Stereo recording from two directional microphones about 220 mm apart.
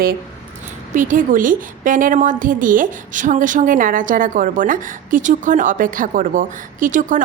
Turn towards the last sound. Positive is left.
turn(degrees=-35)  # may be behind; listen again after turning